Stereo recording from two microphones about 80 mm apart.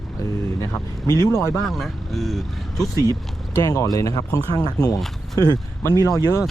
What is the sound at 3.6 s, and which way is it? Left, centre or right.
Speech, left.